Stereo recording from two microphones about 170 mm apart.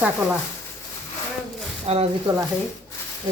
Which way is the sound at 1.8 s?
35° right (ahead or behind).